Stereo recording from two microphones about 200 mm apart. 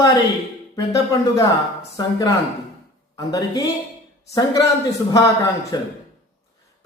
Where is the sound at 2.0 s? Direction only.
20° left (ahead or behind).